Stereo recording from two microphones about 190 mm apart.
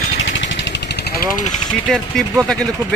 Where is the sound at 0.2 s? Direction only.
75° left (ahead or behind); by 1.2 s 60° left (ahead or behind).